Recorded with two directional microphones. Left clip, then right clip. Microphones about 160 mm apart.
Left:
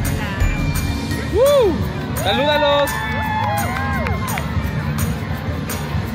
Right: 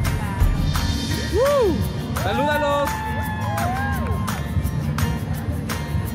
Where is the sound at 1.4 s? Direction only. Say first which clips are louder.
Left 5 dB; 10° right (ahead or behind).